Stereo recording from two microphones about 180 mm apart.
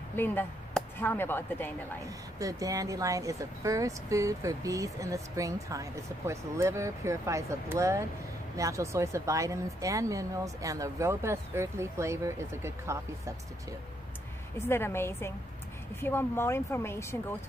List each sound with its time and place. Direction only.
0.1 s speech: 10° left (ahead or behind)
2.3 s speech: 20° right (ahead or behind)
14.7 s speech: 15° left (ahead or behind)